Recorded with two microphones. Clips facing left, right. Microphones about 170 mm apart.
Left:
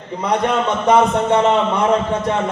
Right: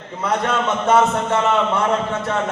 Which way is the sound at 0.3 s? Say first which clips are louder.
Left 2 dB; 15° left (ahead or behind).